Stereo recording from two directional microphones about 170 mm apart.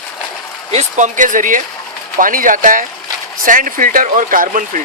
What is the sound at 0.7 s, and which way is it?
Speech, 45° right (ahead or behind).